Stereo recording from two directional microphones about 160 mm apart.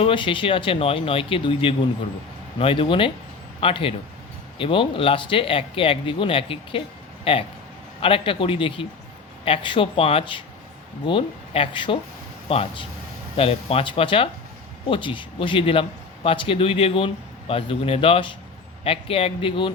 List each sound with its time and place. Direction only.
0.0 s speech: 30° left (ahead or behind)